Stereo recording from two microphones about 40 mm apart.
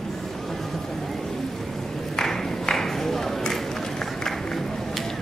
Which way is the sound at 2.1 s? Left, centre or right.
Centre.